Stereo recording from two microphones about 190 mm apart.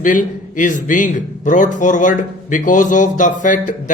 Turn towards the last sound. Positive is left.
turn(degrees=40)  # may be behind; listen again after turning